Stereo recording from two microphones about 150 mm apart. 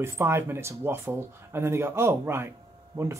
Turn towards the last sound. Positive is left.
turn(degrees=-20)  # may be behind; listen again after turning